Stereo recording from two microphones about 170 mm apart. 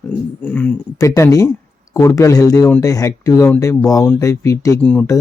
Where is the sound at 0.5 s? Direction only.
15° left (ahead or behind).